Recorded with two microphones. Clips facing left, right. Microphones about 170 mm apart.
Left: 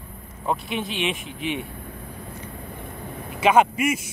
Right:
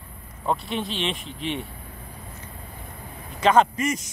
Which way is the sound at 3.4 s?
10° left (ahead or behind).